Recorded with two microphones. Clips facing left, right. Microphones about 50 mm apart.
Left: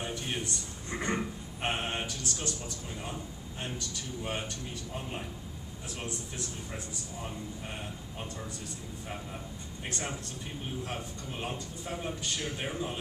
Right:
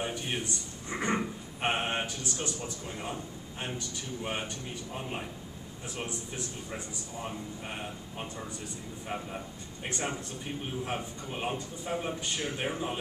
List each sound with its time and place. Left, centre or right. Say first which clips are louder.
0.0 s a sound: right 2 dB; centre
3.6 s a man's voice: right 1 dB; centre
5.9 s a man's voice: right 2 dB; centre
9.8 s a man's voice: right 3 dB; centre